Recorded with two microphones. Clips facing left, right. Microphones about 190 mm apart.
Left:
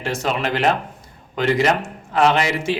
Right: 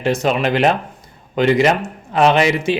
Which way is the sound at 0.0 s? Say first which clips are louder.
Right 6 dB; 20° right (ahead or behind).